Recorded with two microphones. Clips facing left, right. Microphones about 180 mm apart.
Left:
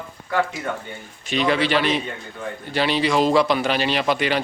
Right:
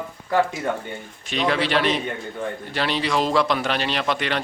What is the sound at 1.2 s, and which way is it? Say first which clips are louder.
A man's voice: left 2 dB; centre (ahead or behind).